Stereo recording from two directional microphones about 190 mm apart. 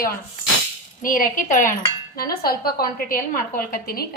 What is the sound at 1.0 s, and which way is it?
A woman's voice, 45° left (ahead or behind).